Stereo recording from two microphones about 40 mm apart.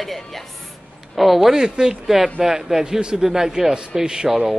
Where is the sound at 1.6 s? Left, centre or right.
Centre.